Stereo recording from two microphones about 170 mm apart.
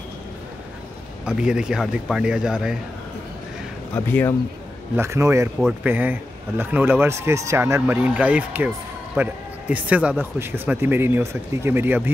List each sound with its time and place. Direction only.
1.2 s speech: 5° right (ahead or behind)
3.9 s speech: 10° left (ahead or behind)
4.9 s speech: 15° right (ahead or behind)